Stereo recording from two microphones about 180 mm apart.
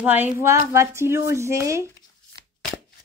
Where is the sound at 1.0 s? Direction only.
15° right (ahead or behind).